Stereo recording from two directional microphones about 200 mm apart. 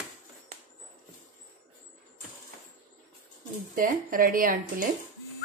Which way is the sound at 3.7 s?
45° right (ahead or behind).